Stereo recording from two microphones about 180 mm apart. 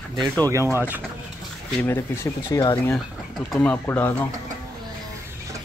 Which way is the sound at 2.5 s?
25° left (ahead or behind).